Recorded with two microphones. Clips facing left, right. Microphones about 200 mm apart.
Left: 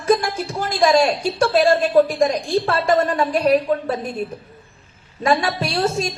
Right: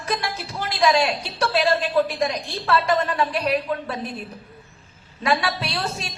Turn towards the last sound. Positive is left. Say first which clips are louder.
# left 8 dB
turn(degrees=45)  # may be behind; listen again after turning